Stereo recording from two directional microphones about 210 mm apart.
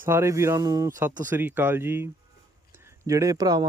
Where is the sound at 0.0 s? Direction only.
10° right (ahead or behind).